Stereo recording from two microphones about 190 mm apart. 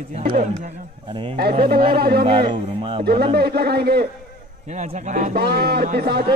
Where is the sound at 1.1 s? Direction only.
30° right (ahead or behind).